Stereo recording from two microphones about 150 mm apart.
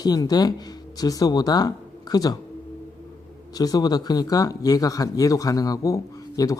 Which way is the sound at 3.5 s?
25° left (ahead or behind).